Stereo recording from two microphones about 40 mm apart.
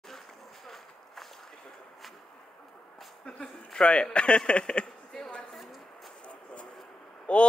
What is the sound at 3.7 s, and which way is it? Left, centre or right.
A man's voice, left.